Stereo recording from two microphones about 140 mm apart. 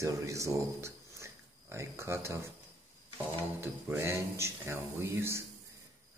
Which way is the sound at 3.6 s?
15° right (ahead or behind).